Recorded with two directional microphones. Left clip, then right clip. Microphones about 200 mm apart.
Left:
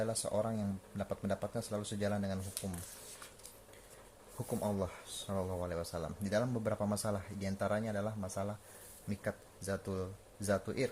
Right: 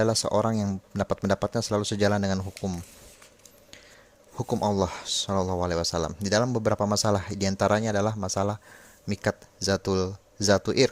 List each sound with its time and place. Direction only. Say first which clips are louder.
0.0 s speech: right 12 dB; 55° right (ahead or behind)
4.4 s speech: right 12 dB; 45° right (ahead or behind)